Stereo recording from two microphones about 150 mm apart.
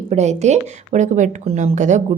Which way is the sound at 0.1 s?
50° right (ahead or behind).